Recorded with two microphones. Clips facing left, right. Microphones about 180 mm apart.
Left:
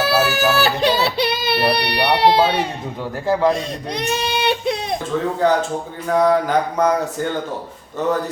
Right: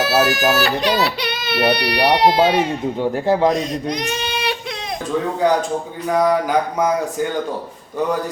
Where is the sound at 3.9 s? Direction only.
30° left (ahead or behind).